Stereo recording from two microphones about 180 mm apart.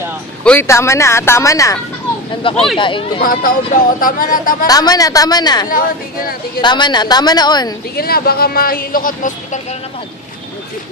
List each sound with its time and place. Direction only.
0.4 s speech: 10° left (ahead or behind)
2.4 s a woman's voice: 30° left (ahead or behind)
3.2 s speech: 50° left (ahead or behind)
4.6 s a woman's voice: 20° left (ahead or behind)
7.9 s speech: 60° left (ahead or behind)